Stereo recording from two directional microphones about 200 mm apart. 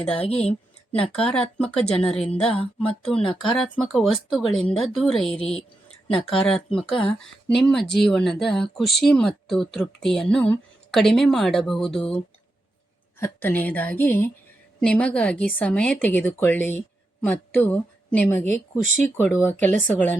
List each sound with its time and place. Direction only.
0.1 s a woman's voice: 30° left (ahead or behind)
1.1 s speech: 5° left (ahead or behind)
5.2 s a woman's voice: 30° left (ahead or behind)
6.3 s a woman's voice: centre (ahead or behind)
18.5 s speech: 40° right (ahead or behind)
19.0 s a woman's voice: 10° left (ahead or behind)